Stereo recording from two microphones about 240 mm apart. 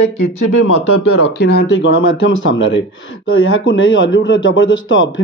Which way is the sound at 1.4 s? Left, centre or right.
Left.